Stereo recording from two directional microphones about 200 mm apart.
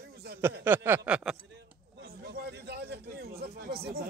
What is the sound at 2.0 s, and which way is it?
A man's voice, 50° right (ahead or behind).